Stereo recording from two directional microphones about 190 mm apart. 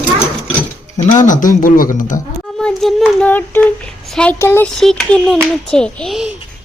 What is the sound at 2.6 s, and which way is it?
Child singing, centre (ahead or behind).